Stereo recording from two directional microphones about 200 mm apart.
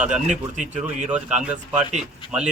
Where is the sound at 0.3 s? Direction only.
35° right (ahead or behind).